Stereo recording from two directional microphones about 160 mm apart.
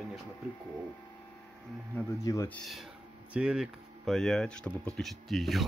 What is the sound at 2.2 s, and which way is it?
Speech, 20° left (ahead or behind).